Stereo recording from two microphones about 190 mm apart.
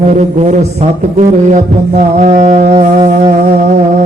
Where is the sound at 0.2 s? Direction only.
40° right (ahead or behind).